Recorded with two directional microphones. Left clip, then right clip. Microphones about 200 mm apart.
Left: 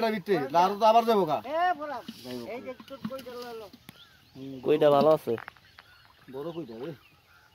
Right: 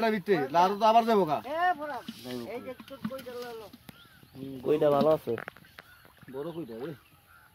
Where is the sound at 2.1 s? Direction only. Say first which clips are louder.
Even; 25° right (ahead or behind).